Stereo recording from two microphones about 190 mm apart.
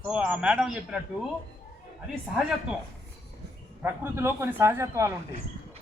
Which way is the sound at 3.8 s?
10° right (ahead or behind).